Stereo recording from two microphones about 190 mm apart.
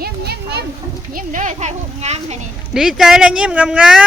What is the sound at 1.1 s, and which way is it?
A child's voice, 40° right (ahead or behind).